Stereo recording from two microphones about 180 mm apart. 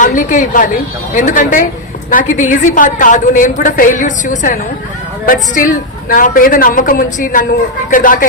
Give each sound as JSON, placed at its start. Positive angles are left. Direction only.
{"t": 0.0, "sound": "a woman's voice", "side_deg": 45}